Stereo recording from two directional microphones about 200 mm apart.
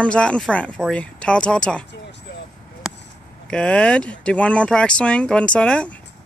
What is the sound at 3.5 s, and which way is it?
Speech, 5° left (ahead or behind).